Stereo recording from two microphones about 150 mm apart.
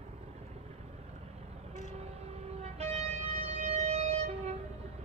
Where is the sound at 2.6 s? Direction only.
45° right (ahead or behind).